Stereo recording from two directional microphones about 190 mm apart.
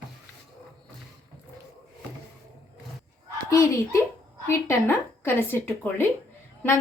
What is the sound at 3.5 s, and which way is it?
Speech, 15° left (ahead or behind).